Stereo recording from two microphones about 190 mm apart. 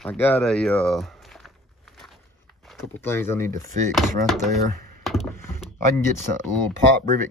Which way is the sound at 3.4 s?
40° right (ahead or behind).